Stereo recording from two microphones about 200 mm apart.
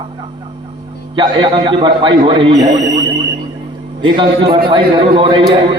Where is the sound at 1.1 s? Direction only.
25° right (ahead or behind).